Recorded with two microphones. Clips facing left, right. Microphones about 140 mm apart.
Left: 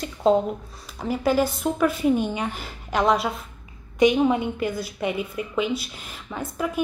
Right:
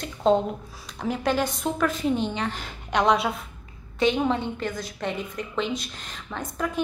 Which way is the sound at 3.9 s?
10° left (ahead or behind).